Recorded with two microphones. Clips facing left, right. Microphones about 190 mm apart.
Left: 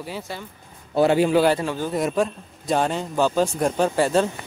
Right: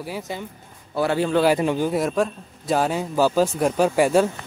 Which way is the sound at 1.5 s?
15° right (ahead or behind).